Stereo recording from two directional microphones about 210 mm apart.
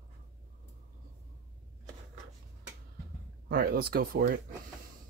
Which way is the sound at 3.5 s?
45° right (ahead or behind).